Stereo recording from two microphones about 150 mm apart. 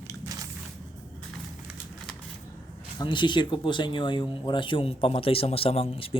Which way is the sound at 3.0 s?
30° left (ahead or behind).